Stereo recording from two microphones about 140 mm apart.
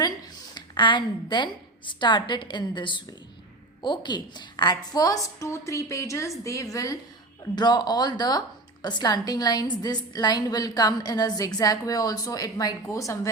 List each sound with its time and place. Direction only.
0.5 s a woman's voice: 30° left (ahead or behind)